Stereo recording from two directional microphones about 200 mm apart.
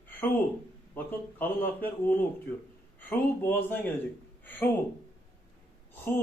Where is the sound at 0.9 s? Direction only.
10° left (ahead or behind).